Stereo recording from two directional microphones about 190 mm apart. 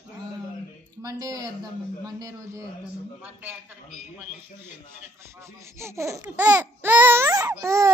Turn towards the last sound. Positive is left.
turn(degrees=-15)  # may be behind; listen again after turning